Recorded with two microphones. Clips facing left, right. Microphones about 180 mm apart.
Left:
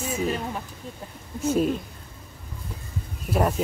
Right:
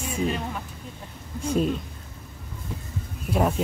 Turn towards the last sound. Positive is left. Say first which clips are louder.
# even
turn(degrees=0)  # may be behind; listen again after turning